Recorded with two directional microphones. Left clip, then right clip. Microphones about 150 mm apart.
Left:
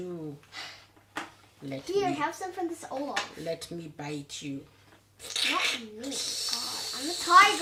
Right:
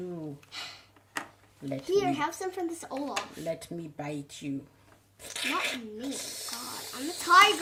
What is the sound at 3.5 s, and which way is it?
A child's voice, 50° right (ahead or behind).